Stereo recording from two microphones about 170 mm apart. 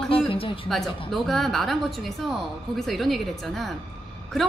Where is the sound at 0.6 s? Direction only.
Centre (ahead or behind).